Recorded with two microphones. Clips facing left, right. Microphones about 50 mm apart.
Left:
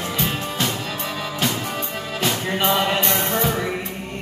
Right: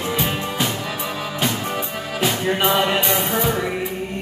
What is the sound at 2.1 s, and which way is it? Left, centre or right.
Music, centre.